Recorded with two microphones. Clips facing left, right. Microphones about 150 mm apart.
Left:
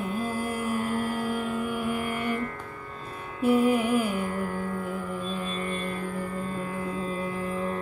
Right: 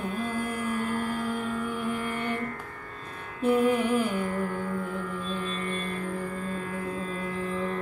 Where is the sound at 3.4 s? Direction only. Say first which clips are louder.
Left 1 dB; 10° left (ahead or behind).